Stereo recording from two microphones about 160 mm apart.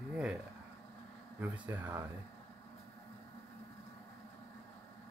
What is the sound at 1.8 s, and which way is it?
Speech, 15° right (ahead or behind).